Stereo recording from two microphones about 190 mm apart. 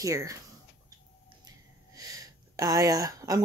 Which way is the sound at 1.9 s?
20° right (ahead or behind).